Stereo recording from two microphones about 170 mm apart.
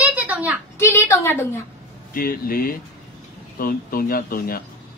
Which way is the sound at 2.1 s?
60° left (ahead or behind).